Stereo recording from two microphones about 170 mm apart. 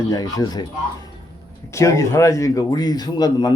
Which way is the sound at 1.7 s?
20° left (ahead or behind).